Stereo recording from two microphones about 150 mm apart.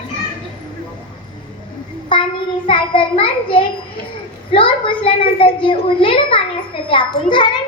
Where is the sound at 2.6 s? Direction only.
35° left (ahead or behind).